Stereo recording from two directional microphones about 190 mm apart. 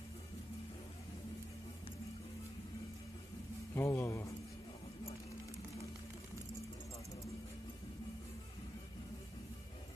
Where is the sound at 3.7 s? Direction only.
10° left (ahead or behind).